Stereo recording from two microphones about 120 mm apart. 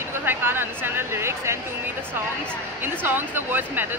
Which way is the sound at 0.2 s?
20° right (ahead or behind).